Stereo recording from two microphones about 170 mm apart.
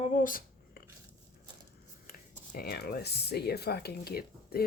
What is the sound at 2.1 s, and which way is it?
Speech, 60° left (ahead or behind).